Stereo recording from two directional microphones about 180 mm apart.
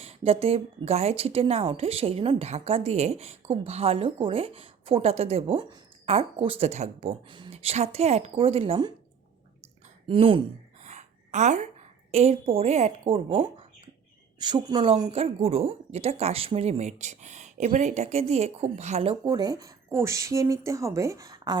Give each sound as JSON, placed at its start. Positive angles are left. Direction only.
{"t": 0.0, "sound": "a woman's voice", "side_deg": -35}
{"t": 7.3, "sound": "a woman's voice", "side_deg": -25}
{"t": 10.1, "sound": "a woman's voice", "side_deg": -30}
{"t": 10.8, "sound": "a woman's voice", "side_deg": -40}
{"t": 14.3, "sound": "a woman's voice", "side_deg": -25}
{"t": 19.2, "sound": "speech", "side_deg": -20}